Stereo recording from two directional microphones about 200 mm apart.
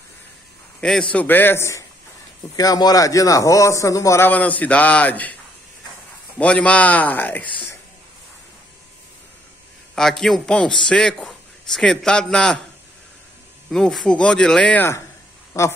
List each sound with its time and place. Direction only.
0.7 s a man's voice: 5° left (ahead or behind)
6.3 s a man's voice: 5° left (ahead or behind)
9.9 s a man's voice: centre (ahead or behind)
13.7 s a man's voice: centre (ahead or behind)